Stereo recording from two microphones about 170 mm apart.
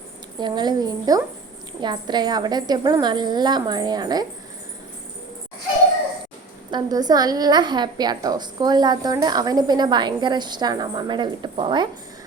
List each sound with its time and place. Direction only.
0.3 s a woman's voice: 25° right (ahead or behind)
6.7 s a woman's voice: 25° right (ahead or behind)